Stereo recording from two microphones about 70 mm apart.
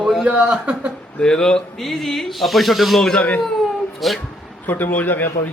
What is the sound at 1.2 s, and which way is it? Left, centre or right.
A man's voice, centre.